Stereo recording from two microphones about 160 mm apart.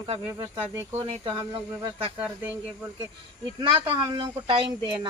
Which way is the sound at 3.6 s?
30° right (ahead or behind).